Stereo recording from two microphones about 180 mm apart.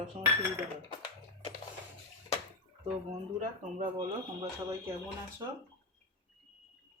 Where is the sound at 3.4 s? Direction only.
45° right (ahead or behind).